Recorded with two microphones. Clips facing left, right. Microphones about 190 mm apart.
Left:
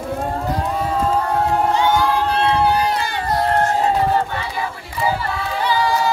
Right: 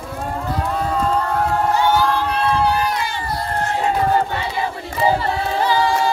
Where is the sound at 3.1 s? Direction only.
75° left (ahead or behind).